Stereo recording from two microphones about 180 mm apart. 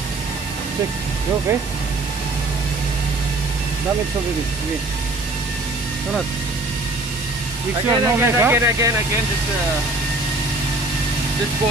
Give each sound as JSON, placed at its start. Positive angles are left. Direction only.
{"t": 7.9, "sound": "speech", "side_deg": -15}